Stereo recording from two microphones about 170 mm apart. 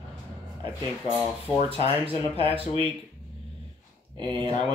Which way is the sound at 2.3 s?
35° right (ahead or behind).